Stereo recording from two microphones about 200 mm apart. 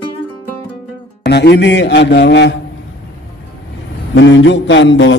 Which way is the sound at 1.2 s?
55° left (ahead or behind).